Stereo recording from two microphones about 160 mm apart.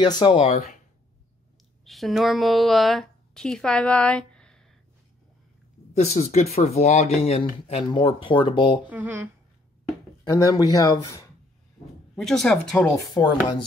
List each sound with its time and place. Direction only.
0.2 s speech: 40° left (ahead or behind)
1.9 s a woman's voice: centre (ahead or behind)
5.9 s speech: 45° left (ahead or behind)
8.8 s speech: 10° right (ahead or behind)
10.3 s speech: 20° left (ahead or behind)
12.2 s speech: 5° left (ahead or behind)
13.1 s speech: 30° left (ahead or behind)